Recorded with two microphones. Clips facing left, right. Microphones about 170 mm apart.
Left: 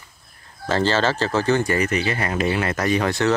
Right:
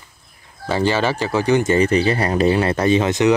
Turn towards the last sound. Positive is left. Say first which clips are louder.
# right 4 dB
turn(degrees=-20)  # may be behind; listen again after turning